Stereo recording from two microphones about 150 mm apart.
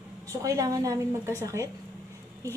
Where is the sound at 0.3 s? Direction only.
20° right (ahead or behind).